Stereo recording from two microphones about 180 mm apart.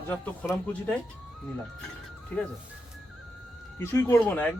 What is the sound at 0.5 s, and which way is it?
Speech, 10° left (ahead or behind).